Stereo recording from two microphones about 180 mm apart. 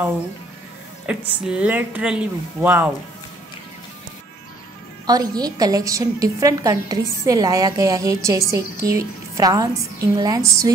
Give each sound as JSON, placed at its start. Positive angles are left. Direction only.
{"t": 1.1, "sound": "speech", "side_deg": -5}
{"t": 5.0, "sound": "a woman's voice", "side_deg": -20}